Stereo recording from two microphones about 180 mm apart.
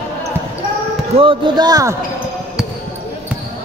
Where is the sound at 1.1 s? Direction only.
30° right (ahead or behind).